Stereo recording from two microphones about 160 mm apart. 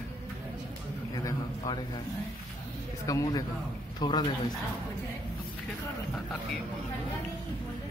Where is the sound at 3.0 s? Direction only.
20° left (ahead or behind).